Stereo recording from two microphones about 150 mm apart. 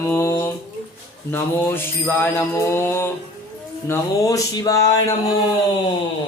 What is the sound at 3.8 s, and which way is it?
Speech, 20° left (ahead or behind).